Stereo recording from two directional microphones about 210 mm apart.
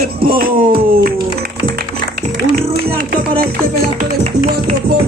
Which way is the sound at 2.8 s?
45° right (ahead or behind).